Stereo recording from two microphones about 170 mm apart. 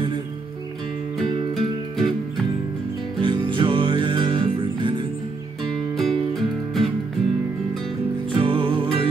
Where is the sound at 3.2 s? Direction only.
30° right (ahead or behind).